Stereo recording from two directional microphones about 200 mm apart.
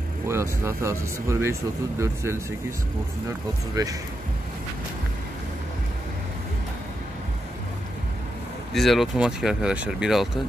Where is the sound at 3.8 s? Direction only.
20° right (ahead or behind).